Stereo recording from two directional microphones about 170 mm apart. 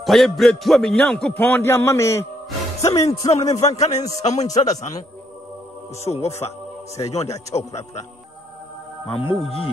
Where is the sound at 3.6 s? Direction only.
40° left (ahead or behind).